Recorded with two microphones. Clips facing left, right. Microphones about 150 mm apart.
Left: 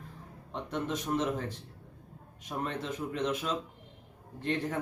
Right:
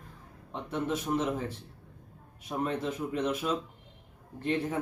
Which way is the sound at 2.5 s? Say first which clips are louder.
Right 4 dB; 10° right (ahead or behind).